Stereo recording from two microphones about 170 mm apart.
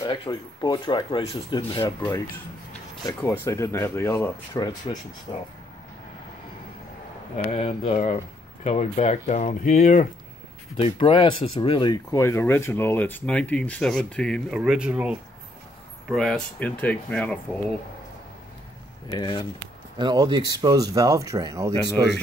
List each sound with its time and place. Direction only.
0.0 s speech: 25° left (ahead or behind)
1.8 s speech: 20° left (ahead or behind)
3.3 s speech: 15° left (ahead or behind)
7.5 s speech: 35° left (ahead or behind)
10.8 s speech: 30° left (ahead or behind); by 14.6 s 5° left (ahead or behind)
14.6 s speech: 5° right (ahead or behind)
19.0 s speech: 25° left (ahead or behind)
20.0 s speech: 25° right (ahead or behind)